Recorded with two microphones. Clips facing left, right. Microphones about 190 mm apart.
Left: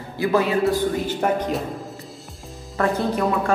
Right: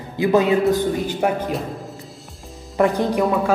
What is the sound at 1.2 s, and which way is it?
Speech, 10° right (ahead or behind).